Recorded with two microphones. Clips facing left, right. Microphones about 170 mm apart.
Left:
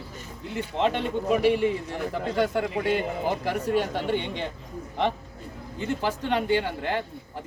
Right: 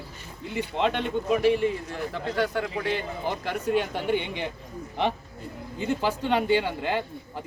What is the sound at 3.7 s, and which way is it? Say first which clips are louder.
Speech: right 1 dB; centre (ahead or behind).